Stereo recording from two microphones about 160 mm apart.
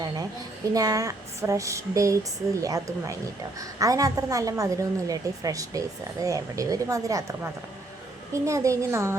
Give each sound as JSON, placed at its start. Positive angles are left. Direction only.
{"t": 0.7, "sound": "a woman's voice", "side_deg": -20}